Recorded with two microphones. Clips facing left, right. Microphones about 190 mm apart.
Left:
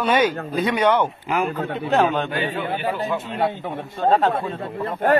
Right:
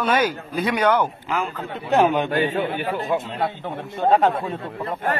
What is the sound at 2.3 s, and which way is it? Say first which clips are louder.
Speech: right 4 dB; 45° right (ahead or behind).